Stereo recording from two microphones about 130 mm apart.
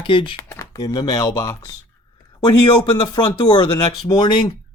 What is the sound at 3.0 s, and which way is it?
Speech, 30° left (ahead or behind).